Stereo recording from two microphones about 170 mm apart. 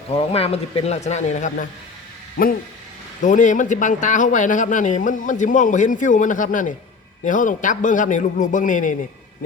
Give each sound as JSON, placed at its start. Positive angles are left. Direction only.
{"t": 0.1, "sound": "speech", "side_deg": 35}
{"t": 3.2, "sound": "speech", "side_deg": 50}